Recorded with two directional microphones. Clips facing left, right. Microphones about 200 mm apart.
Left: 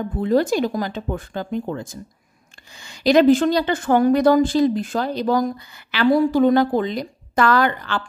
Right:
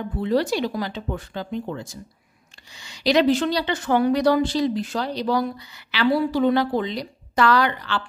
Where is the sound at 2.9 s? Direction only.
50° left (ahead or behind).